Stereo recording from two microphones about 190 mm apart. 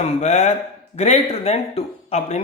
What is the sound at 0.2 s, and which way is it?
Speech, 35° left (ahead or behind).